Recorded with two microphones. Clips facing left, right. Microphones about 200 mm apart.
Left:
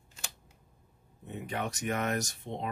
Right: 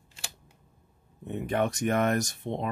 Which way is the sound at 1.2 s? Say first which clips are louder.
Right 8 dB; 60° right (ahead or behind).